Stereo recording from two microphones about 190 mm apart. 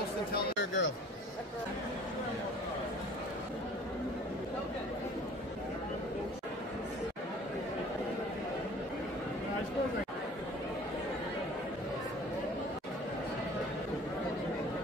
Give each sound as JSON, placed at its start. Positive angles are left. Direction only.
{"t": 0.3, "sound": "speech", "side_deg": 75}